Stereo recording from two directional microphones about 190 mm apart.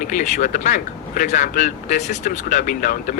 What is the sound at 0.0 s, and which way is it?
Speech, 40° left (ahead or behind).